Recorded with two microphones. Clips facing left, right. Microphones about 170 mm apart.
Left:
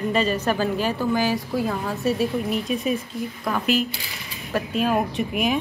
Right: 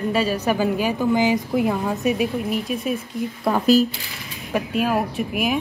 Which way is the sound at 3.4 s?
35° right (ahead or behind).